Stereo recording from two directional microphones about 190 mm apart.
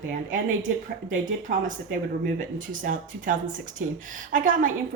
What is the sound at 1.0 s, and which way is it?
Speech, 45° right (ahead or behind).